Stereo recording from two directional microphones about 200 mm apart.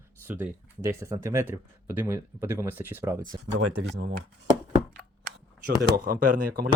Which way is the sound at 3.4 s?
70° right (ahead or behind).